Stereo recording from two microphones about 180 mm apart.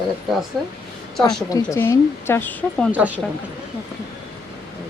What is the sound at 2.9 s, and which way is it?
Speech, 10° right (ahead or behind).